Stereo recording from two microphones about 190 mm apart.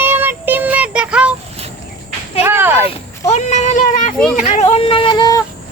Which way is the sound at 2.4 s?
10° right (ahead or behind).